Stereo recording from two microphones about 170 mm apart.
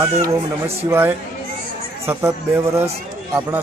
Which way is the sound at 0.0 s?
20° right (ahead or behind).